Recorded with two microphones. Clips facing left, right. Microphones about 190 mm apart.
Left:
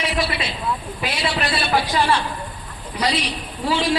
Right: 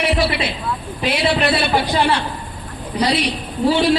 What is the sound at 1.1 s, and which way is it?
A man's voice, 60° right (ahead or behind).